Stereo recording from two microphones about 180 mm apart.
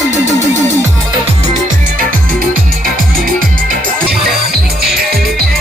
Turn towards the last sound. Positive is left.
turn(degrees=-60)  # may be behind; listen again after turning